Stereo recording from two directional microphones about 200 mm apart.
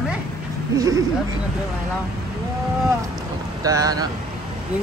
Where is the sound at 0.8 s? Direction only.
15° right (ahead or behind).